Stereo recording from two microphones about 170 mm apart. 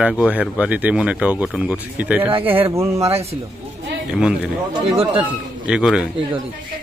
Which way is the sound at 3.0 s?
35° right (ahead or behind).